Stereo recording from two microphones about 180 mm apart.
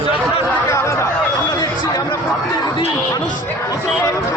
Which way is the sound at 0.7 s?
15° left (ahead or behind).